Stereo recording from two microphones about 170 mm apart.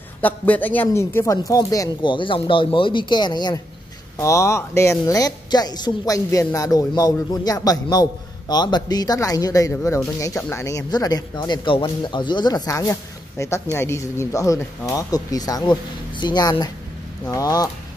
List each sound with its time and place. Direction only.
0.2 s speech: 10° left (ahead or behind)